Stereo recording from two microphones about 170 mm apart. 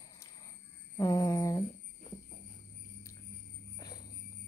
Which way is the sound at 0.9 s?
15° left (ahead or behind).